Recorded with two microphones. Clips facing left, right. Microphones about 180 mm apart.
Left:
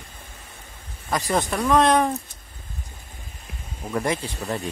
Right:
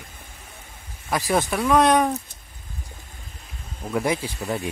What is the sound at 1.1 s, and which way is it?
Speech, 5° right (ahead or behind).